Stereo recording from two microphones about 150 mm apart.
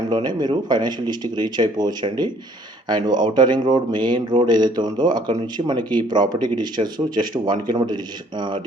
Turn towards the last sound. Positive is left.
turn(degrees=-30)  # may be behind; listen again after turning